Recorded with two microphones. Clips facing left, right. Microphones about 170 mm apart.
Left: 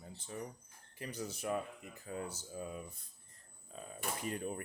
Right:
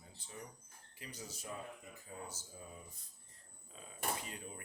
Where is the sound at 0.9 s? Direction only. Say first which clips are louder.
Left 8 dB; 55° left (ahead or behind).